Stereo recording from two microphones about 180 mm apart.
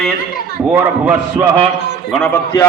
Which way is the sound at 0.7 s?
10° right (ahead or behind).